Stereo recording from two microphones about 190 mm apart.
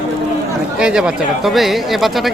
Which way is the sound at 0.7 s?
5° right (ahead or behind).